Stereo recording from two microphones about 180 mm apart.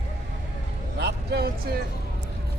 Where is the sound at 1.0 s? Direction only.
65° right (ahead or behind).